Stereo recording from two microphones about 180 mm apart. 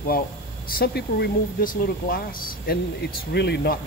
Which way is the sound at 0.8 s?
65° left (ahead or behind).